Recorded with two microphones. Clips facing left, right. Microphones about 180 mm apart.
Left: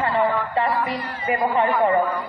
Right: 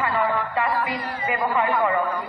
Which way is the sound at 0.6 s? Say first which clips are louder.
Left 2 dB; 25° left (ahead or behind).